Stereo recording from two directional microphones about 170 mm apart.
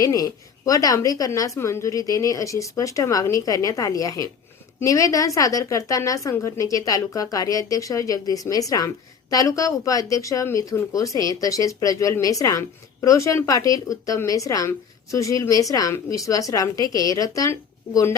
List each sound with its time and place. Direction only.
0.0 s speech: 20° left (ahead or behind)